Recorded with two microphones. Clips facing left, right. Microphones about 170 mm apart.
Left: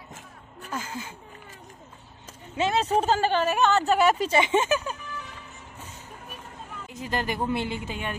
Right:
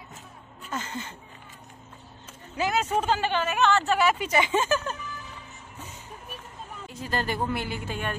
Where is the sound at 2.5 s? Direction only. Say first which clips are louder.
Left 2 dB; 25° left (ahead or behind).